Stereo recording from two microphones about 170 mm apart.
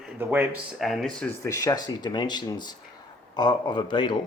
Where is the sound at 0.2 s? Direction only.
10° right (ahead or behind).